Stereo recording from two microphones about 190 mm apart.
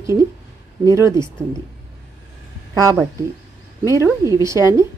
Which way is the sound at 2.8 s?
15° right (ahead or behind).